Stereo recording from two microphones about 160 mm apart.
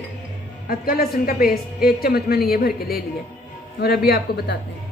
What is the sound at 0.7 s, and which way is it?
A woman's voice, 70° left (ahead or behind).